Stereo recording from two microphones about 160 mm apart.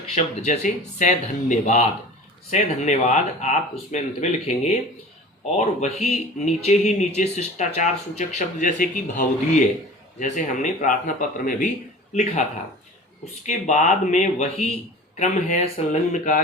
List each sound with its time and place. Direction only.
0.1 s speech: 45° left (ahead or behind)
13.4 s speech: 50° left (ahead or behind)